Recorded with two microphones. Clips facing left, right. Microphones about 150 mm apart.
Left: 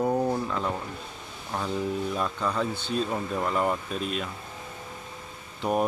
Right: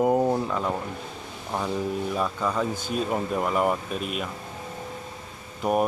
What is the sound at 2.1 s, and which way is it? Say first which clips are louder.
Speech: right 2 dB; 10° right (ahead or behind).